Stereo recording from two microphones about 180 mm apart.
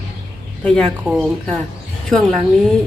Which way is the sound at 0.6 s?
Centre (ahead or behind).